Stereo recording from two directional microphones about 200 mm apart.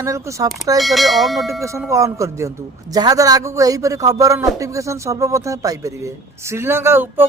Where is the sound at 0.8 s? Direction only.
Centre (ahead or behind).